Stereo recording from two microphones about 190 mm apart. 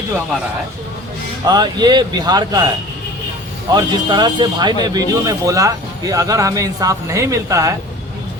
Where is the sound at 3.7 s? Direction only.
25° right (ahead or behind).